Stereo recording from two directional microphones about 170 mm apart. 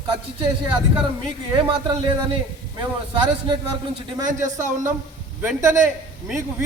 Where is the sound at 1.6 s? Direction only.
30° right (ahead or behind).